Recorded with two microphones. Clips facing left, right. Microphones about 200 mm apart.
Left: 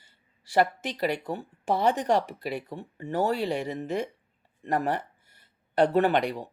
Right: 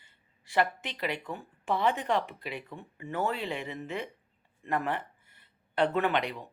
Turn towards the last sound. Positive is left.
turn(degrees=35)  # may be behind; listen again after turning